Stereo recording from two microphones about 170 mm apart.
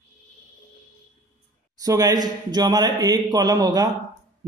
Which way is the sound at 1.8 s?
20° right (ahead or behind).